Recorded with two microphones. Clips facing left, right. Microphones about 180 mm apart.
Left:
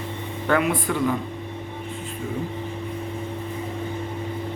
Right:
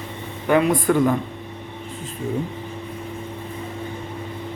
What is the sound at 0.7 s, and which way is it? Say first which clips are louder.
Speech: right 5 dB; 50° right (ahead or behind).